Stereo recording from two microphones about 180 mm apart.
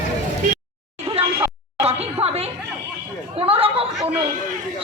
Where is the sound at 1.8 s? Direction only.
35° right (ahead or behind).